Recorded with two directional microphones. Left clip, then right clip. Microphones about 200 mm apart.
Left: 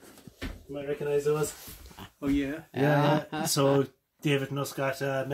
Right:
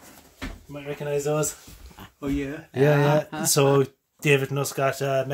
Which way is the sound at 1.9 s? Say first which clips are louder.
Right 1 dB; 15° left (ahead or behind).